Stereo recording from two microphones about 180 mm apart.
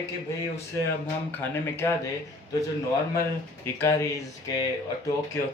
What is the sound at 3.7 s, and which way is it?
Speech, 15° left (ahead or behind).